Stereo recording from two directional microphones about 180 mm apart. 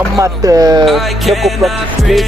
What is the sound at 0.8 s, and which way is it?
Speech, centre (ahead or behind).